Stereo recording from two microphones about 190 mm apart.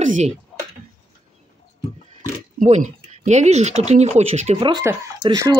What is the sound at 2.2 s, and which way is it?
Speech, 40° right (ahead or behind).